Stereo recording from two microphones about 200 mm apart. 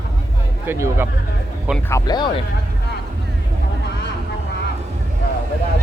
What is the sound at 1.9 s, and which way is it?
Speech, 20° left (ahead or behind).